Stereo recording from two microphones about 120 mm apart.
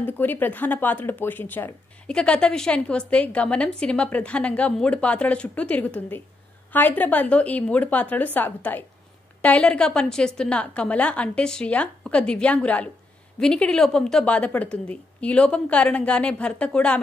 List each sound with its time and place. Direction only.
0.0 s a woman's voice: 15° left (ahead or behind)